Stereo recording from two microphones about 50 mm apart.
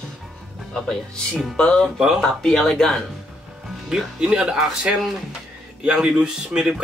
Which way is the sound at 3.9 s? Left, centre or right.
Centre.